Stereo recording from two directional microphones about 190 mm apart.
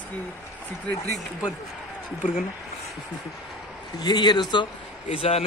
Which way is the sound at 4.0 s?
20° left (ahead or behind).